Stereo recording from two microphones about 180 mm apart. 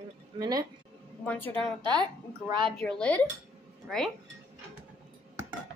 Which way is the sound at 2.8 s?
5° left (ahead or behind).